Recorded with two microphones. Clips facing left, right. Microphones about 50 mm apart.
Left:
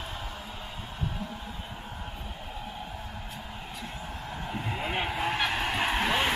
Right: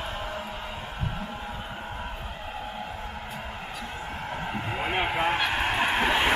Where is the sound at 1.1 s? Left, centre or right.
Right.